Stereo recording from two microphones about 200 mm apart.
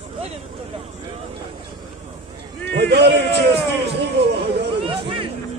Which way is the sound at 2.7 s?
55° right (ahead or behind).